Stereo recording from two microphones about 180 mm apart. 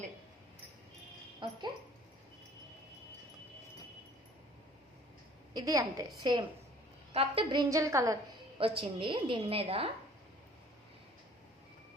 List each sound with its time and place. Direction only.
1.4 s speech: 25° right (ahead or behind)
5.5 s a woman's voice: 20° right (ahead or behind)
8.5 s a woman's voice: 30° right (ahead or behind)